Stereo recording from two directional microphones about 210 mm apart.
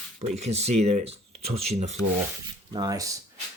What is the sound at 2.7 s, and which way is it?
Speech, 20° right (ahead or behind).